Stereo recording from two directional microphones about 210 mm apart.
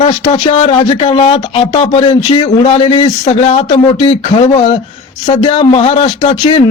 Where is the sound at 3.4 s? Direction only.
35° left (ahead or behind).